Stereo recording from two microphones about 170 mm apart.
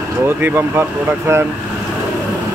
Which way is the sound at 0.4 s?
10° right (ahead or behind).